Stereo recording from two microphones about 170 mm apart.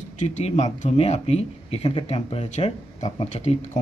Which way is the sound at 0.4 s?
40° left (ahead or behind).